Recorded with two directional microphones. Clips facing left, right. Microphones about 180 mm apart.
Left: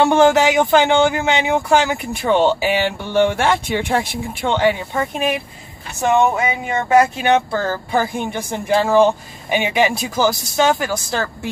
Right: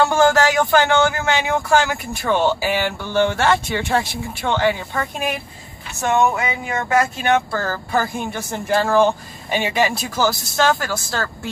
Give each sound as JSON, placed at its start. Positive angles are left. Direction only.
{"t": 0.0, "sound": "speech", "side_deg": 20}